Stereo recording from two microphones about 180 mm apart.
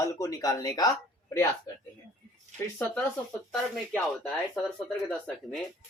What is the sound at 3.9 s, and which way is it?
Speech, 5° left (ahead or behind).